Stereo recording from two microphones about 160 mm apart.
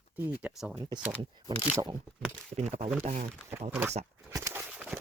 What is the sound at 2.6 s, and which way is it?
Speech, 40° right (ahead or behind).